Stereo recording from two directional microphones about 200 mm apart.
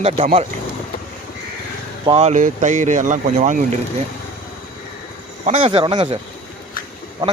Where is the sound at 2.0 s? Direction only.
30° right (ahead or behind).